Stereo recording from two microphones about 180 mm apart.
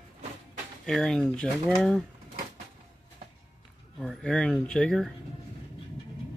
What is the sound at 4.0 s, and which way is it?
Speech, 5° left (ahead or behind).